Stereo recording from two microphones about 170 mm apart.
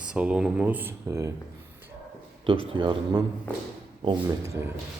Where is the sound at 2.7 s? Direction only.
30° right (ahead or behind).